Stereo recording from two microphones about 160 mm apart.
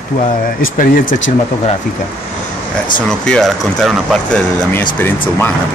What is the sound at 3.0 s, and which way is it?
Speech, 5° left (ahead or behind).